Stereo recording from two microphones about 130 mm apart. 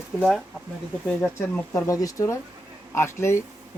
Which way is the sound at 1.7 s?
25° left (ahead or behind).